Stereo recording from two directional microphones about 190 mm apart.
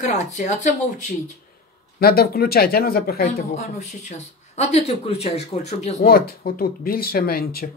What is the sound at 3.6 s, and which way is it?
Speech, 35° left (ahead or behind).